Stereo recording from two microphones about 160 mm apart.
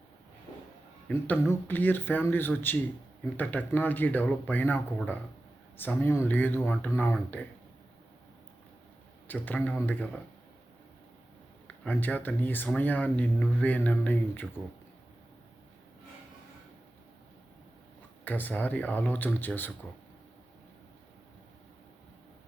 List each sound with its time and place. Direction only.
1.0 s speech: 10° left (ahead or behind)
9.2 s speech: 10° left (ahead or behind)
11.9 s speech: 10° left (ahead or behind)
18.3 s speech: 10° left (ahead or behind)